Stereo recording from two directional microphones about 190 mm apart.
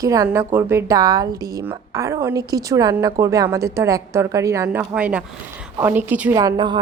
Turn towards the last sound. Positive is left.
turn(degrees=-20)  # may be behind; listen again after turning